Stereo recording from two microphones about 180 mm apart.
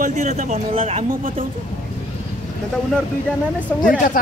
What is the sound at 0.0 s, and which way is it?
Speech, 40° right (ahead or behind).